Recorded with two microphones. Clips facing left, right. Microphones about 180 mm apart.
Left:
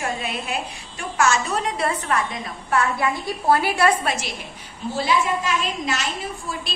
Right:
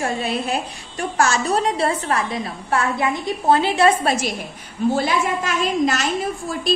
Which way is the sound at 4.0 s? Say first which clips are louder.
Right 5 dB; 35° right (ahead or behind).